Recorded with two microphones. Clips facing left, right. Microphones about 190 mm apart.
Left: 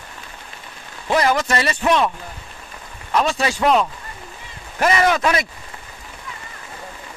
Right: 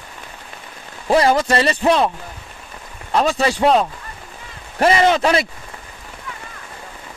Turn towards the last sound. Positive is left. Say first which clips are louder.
# right 3 dB
turn(degrees=-30)  # may be behind; listen again after turning